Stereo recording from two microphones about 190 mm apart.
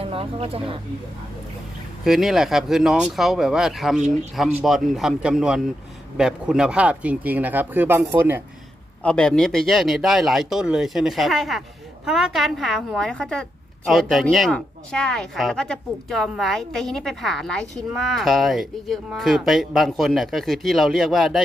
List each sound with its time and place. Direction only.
0.0 s speech: 30° right (ahead or behind)
2.0 s a woman's voice: centre (ahead or behind)
9.0 s a woman's voice: 5° left (ahead or behind)